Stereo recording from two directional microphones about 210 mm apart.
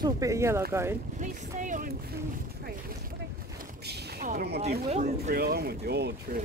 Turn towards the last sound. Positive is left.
turn(degrees=-50)  # may be behind; listen again after turning